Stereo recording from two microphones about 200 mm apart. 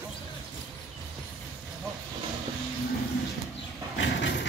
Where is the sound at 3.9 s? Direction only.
65° left (ahead or behind).